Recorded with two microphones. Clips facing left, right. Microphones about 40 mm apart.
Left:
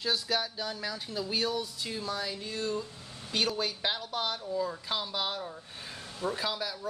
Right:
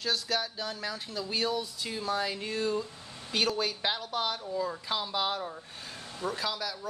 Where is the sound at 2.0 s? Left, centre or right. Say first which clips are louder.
Right 7 dB; right.